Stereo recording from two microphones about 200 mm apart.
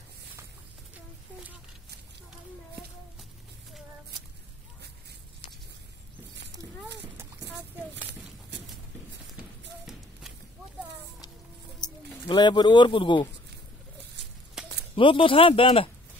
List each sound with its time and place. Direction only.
11.8 s speech: 20° left (ahead or behind)
14.6 s a sound: 5° right (ahead or behind)
15.0 s speech: 25° left (ahead or behind)